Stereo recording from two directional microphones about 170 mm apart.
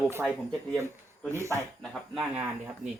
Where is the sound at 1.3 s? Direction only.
15° right (ahead or behind).